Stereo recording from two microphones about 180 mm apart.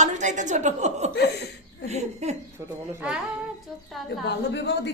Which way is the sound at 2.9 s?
10° right (ahead or behind).